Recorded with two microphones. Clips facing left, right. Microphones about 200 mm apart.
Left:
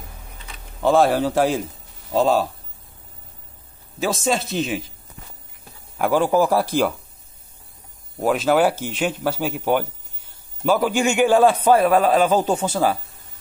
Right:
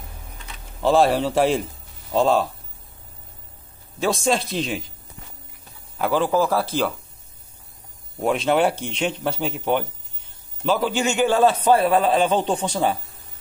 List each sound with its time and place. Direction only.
0.8 s a man's voice: centre (ahead or behind)
4.0 s a man's voice: centre (ahead or behind)
5.9 s a man's voice: 10° left (ahead or behind)
8.2 s a man's voice: centre (ahead or behind)